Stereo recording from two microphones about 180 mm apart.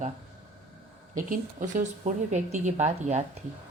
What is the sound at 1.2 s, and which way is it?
Speech, 45° right (ahead or behind).